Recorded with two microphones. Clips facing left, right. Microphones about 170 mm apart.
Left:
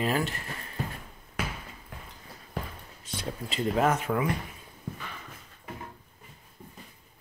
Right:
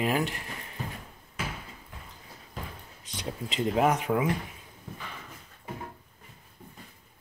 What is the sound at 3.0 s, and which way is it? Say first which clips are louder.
Speech: even; 15° right (ahead or behind).